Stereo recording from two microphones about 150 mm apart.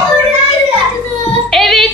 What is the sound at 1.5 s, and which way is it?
Female singing, centre (ahead or behind).